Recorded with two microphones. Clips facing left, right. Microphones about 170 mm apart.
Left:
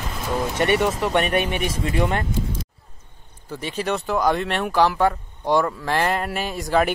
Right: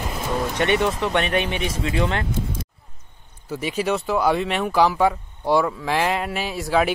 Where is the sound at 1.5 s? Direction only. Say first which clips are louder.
Even; 50° left (ahead or behind).